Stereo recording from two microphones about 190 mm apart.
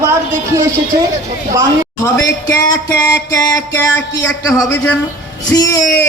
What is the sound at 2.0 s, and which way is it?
Speech, 15° left (ahead or behind).